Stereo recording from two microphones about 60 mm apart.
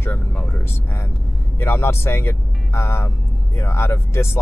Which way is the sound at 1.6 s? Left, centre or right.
Left.